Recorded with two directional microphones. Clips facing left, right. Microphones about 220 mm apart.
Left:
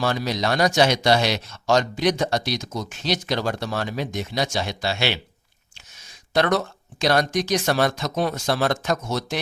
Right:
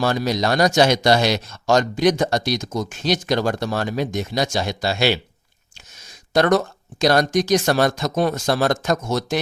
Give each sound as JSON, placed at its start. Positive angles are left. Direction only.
{"t": 0.0, "sound": "speech", "side_deg": -45}
{"t": 6.3, "sound": "speech", "side_deg": -45}